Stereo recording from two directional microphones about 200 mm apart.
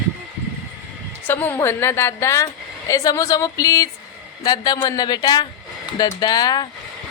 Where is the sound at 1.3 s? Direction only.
10° left (ahead or behind).